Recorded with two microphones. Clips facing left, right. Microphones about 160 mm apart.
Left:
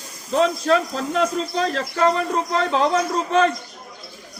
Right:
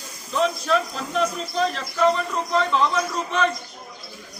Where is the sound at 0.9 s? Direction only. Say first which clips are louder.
Left 3 dB; 40° left (ahead or behind).